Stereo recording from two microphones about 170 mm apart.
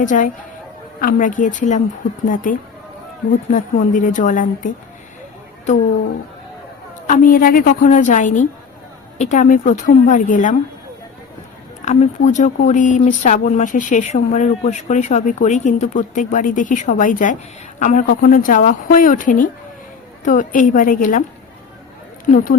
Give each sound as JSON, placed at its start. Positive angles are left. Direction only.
{"t": 0.0, "sound": "speech", "side_deg": 50}
{"t": 7.1, "sound": "speech", "side_deg": 55}
{"t": 11.9, "sound": "speech", "side_deg": 45}